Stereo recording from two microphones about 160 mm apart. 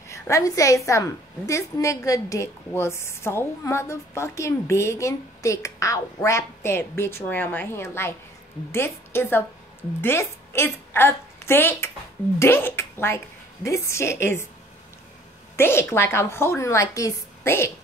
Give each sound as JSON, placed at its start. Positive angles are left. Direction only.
{"t": 0.1, "sound": "a woman's voice", "side_deg": 20}
{"t": 15.5, "sound": "a woman's voice", "side_deg": 15}